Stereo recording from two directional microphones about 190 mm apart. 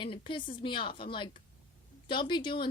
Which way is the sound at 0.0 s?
25° left (ahead or behind).